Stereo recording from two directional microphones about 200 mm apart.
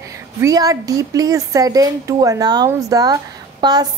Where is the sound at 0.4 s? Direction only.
15° right (ahead or behind).